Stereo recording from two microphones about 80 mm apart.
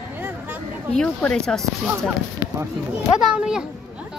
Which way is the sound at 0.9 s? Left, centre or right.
Centre.